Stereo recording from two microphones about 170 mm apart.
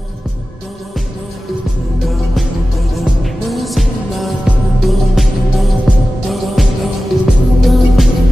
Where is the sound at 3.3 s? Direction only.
Centre (ahead or behind).